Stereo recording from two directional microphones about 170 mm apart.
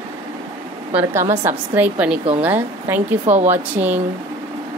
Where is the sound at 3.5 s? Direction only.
10° right (ahead or behind).